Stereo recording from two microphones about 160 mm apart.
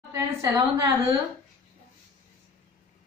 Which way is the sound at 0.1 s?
20° right (ahead or behind).